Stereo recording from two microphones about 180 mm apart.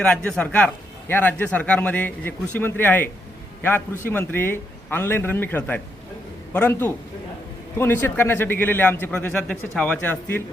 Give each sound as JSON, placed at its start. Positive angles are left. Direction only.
{"t": 0.0, "sound": "a man's voice", "side_deg": 5}